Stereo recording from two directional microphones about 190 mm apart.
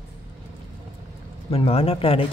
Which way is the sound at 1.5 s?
30° left (ahead or behind).